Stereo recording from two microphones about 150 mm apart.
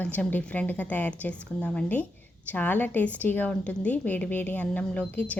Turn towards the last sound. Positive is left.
turn(degrees=10)  # may be behind; listen again after turning